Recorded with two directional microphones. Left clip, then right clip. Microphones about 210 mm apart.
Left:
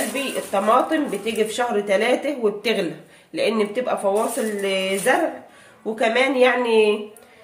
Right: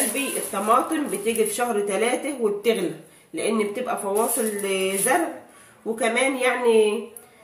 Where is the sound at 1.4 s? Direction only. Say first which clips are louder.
Left 3 dB; 35° left (ahead or behind).